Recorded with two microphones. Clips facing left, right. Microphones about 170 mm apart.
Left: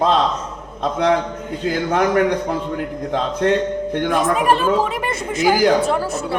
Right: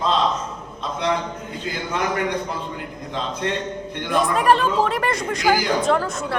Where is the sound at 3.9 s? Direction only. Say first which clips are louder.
Left 2 dB; 50° left (ahead or behind).